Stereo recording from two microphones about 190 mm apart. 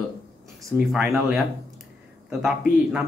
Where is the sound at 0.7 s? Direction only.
Centre (ahead or behind).